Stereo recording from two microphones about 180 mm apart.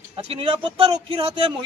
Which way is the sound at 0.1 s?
30° right (ahead or behind).